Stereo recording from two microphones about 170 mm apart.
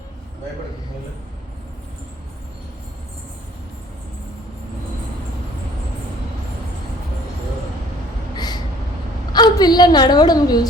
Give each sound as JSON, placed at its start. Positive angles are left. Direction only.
{"t": 9.3, "sound": "a woman's voice", "side_deg": 25}